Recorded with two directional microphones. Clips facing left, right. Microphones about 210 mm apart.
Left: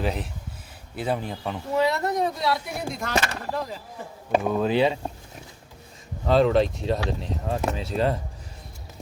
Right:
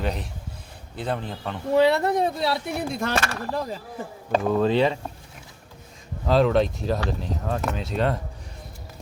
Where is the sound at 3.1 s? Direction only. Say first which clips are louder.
Even; 20° left (ahead or behind).